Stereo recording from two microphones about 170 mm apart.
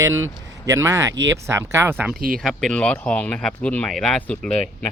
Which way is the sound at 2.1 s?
55° right (ahead or behind).